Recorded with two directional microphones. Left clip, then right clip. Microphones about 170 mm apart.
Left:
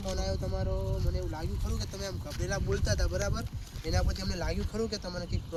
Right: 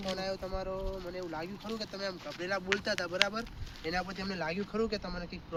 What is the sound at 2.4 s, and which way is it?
Speech, 25° right (ahead or behind).